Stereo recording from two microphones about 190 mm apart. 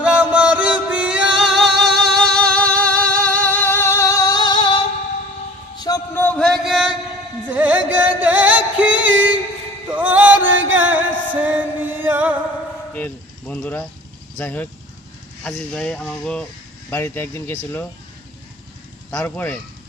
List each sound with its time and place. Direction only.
0.0 s music: 5° right (ahead or behind); by 4.8 s 25° left (ahead or behind)
5.8 s a sound: 15° left (ahead or behind); by 6.9 s centre (ahead or behind)
7.4 s carnatic music: 5° right (ahead or behind)
8.0 s music: 10° right (ahead or behind)
10.5 s music: 85° right
10.8 s music: 10° right (ahead or behind)
12.9 s speech: 10° left (ahead or behind)
19.1 s speech: 10° left (ahead or behind)